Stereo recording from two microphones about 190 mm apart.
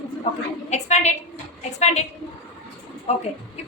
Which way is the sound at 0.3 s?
30° left (ahead or behind).